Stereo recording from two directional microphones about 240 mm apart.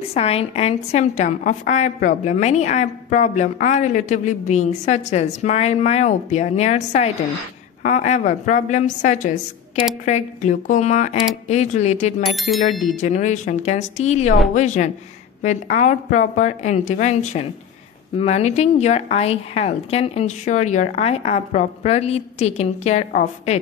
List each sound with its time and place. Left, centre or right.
0.0 s a woman's voice: left
12.4 s speech: centre
13.0 s a woman's voice: left